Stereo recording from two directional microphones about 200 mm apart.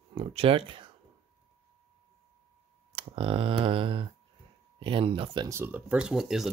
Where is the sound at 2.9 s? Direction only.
25° right (ahead or behind).